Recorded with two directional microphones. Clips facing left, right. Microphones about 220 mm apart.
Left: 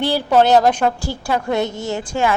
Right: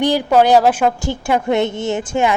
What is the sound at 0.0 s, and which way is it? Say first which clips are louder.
Speech: right 2 dB; 10° right (ahead or behind).